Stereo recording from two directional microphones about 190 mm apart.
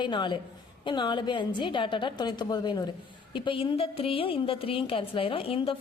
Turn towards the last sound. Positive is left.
turn(degrees=30)  # may be behind; listen again after turning